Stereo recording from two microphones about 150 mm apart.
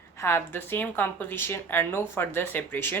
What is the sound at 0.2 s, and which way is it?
A woman's voice, 15° left (ahead or behind).